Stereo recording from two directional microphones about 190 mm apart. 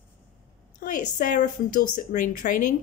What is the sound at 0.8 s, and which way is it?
A woman's voice, 45° left (ahead or behind).